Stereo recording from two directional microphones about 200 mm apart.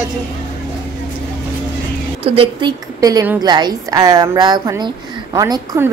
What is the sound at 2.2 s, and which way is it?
A woman's voice, 25° right (ahead or behind).